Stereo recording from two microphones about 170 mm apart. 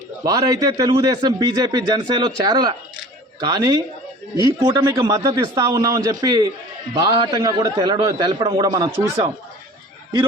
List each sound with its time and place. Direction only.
0.3 s a man's voice: 20° right (ahead or behind)